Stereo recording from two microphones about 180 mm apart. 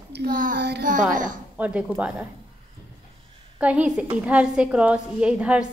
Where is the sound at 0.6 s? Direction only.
70° right (ahead or behind).